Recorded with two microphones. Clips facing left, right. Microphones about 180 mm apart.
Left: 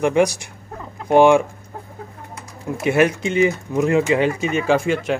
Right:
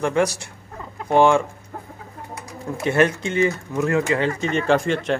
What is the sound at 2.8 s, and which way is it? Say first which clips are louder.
Speech: left 2 dB; 15° left (ahead or behind).